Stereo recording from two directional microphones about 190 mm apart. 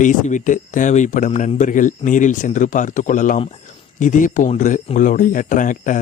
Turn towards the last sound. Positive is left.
turn(degrees=45)  # may be behind; listen again after turning